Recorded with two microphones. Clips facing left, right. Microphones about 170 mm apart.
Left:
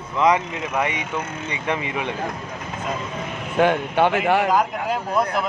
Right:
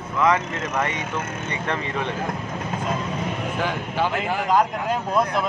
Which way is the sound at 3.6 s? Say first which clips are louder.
Left 8 dB; 65° left (ahead or behind).